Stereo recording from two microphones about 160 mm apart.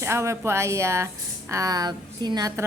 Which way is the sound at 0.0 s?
15° right (ahead or behind).